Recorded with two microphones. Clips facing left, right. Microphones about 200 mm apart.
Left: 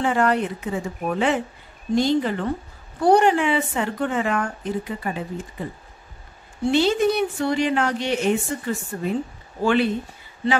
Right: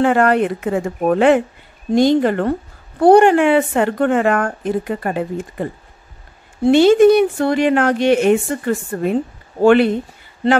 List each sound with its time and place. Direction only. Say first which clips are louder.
0.0 s speech: right 7 dB; 60° right (ahead or behind)
2.0 s speech: right 7 dB; 70° right (ahead or behind)